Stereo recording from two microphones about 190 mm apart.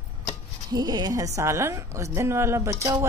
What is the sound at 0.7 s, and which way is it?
A woman's voice, 20° right (ahead or behind).